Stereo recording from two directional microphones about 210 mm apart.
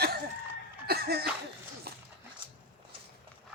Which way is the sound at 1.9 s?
45° right (ahead or behind).